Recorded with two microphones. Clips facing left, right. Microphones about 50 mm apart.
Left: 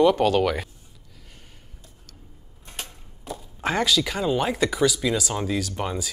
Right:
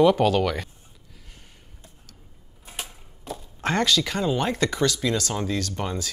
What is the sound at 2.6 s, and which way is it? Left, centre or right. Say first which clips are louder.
Speech: right 1 dB; centre.